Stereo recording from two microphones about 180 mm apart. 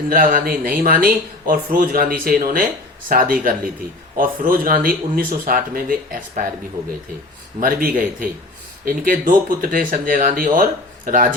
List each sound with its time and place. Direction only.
0.1 s speech: 50° right (ahead or behind)
7.6 s speech: 50° right (ahead or behind)